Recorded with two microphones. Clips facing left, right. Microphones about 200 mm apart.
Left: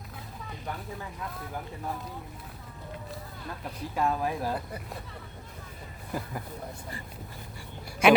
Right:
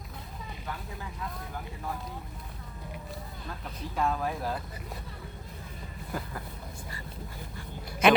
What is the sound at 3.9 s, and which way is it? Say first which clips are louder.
Speech: left 1 dB; 15° left (ahead or behind).